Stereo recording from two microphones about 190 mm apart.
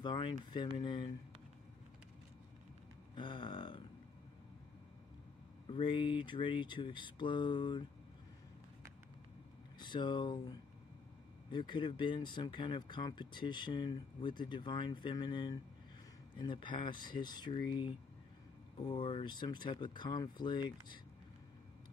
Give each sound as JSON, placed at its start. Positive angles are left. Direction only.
{"t": 0.0, "sound": "speech", "side_deg": 25}
{"t": 3.2, "sound": "speech", "side_deg": 25}
{"t": 5.7, "sound": "speech", "side_deg": 25}
{"t": 9.8, "sound": "speech", "side_deg": 25}
{"t": 18.8, "sound": "speech", "side_deg": 25}